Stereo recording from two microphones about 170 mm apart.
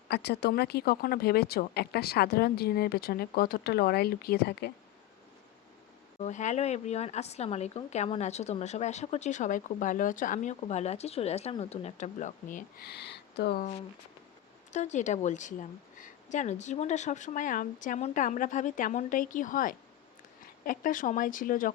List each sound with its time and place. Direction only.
0.1 s speech: 75° left (ahead or behind)
6.1 s a woman's voice: 45° left (ahead or behind); by 13.7 s 70° left (ahead or behind)
14.7 s a woman's voice: 45° left (ahead or behind)